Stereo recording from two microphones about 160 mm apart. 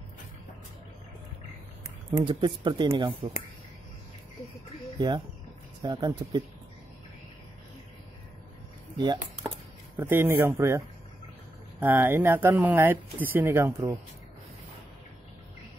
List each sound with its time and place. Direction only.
2.2 s speech: 30° right (ahead or behind)
4.9 s speech: 25° right (ahead or behind)
8.9 s speech: 30° right (ahead or behind)
9.9 s speech: 15° right (ahead or behind)
11.8 s speech: 15° right (ahead or behind)